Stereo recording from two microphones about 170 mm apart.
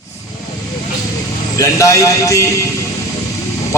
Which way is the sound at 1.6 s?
20° left (ahead or behind).